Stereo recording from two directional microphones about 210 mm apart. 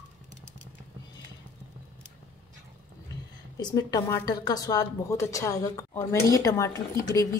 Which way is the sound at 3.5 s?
20° left (ahead or behind).